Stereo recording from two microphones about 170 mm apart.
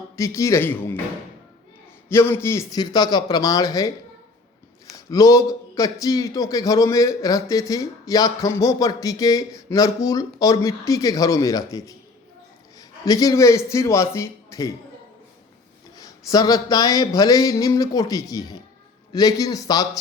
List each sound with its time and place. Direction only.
0.2 s speech: 15° left (ahead or behind)
2.0 s a man's voice: 15° left (ahead or behind)
13.1 s speech: 20° left (ahead or behind)
16.0 s a man's voice: 20° left (ahead or behind)